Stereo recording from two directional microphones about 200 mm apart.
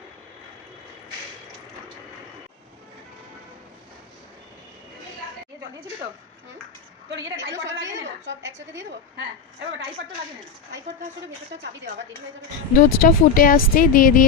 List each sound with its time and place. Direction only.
7.1 s a woman's voice: 65° right (ahead or behind)
12.8 s speech: 45° left (ahead or behind)